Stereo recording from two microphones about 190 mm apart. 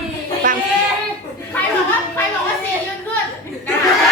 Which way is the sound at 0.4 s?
45° right (ahead or behind).